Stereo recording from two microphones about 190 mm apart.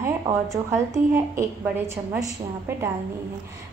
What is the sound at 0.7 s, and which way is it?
Speech, 15° right (ahead or behind).